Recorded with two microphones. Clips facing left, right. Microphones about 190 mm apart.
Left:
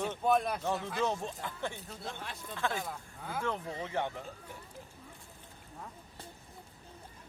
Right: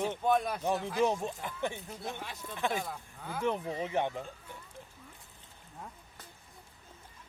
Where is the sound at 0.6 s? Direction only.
15° right (ahead or behind).